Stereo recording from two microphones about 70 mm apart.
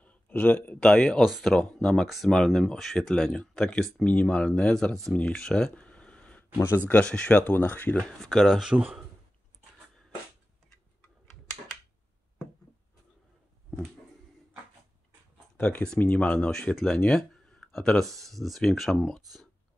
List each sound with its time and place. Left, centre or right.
0.0 s a sound: left
0.7 s speech: centre
5.1 s a sound: centre
6.9 s speech: centre
8.2 s speech: centre
15.5 s speech: centre